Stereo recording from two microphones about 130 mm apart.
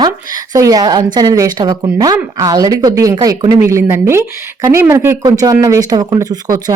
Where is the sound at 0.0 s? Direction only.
30° right (ahead or behind).